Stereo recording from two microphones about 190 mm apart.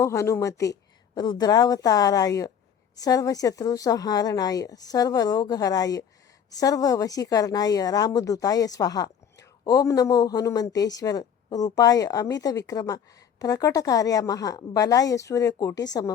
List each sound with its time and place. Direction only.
0.0 s speech: 15° left (ahead or behind)